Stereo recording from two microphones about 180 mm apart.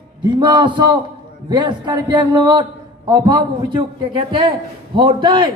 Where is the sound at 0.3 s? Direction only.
25° right (ahead or behind).